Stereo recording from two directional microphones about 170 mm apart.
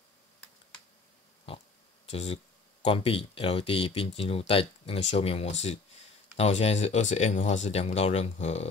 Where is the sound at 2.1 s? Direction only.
35° left (ahead or behind).